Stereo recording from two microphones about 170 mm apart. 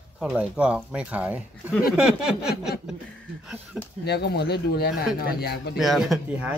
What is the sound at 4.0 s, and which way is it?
Speech, 75° left (ahead or behind).